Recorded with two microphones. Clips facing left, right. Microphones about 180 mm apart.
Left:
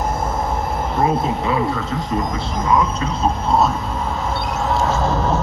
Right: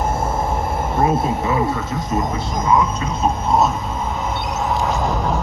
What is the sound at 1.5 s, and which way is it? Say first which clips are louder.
Speech: even; 25° right (ahead or behind).